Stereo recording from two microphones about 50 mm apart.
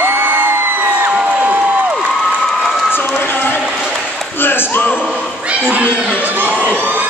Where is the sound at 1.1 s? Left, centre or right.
Right.